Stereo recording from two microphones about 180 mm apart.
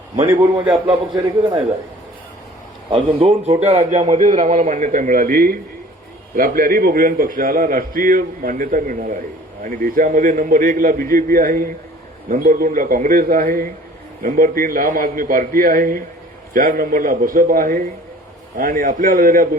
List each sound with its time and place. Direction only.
0.7 s a man's voice: 20° right (ahead or behind)
2.9 s a man's voice: 30° right (ahead or behind); by 19.5 s 50° right (ahead or behind)